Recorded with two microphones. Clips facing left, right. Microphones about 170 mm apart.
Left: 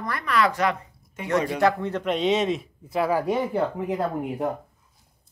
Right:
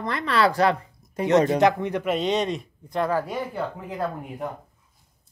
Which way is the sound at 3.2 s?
20° left (ahead or behind).